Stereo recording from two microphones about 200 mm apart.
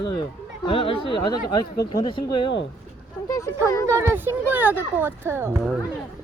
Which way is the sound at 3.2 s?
15° left (ahead or behind).